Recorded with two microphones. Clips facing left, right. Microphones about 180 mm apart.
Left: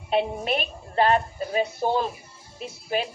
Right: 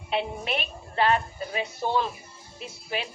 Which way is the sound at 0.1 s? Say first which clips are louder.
Left 5 dB; 40° left (ahead or behind).